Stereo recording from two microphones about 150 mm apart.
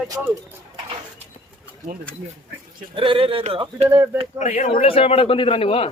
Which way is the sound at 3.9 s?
15° right (ahead or behind).